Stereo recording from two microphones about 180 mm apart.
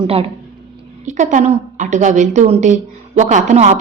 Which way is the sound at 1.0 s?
40° right (ahead or behind).